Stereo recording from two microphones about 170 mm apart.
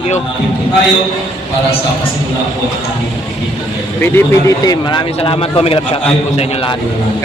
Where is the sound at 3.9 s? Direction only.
15° left (ahead or behind); by 6.8 s 30° left (ahead or behind).